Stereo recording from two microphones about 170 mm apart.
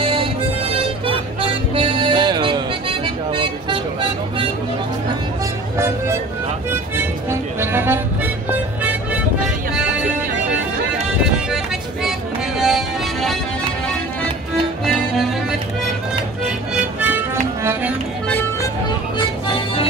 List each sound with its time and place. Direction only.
0.0 s music: 35° right (ahead or behind)
6.7 s music: 15° right (ahead or behind)
12.5 s music: centre (ahead or behind)
16.4 s music: 5° right (ahead or behind)
19.1 s music: 30° left (ahead or behind)